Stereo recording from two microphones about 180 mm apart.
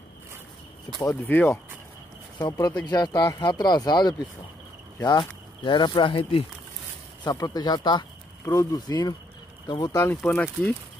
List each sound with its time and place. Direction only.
0.9 s speech: 20° left (ahead or behind)
1.2 s speech: 10° left (ahead or behind)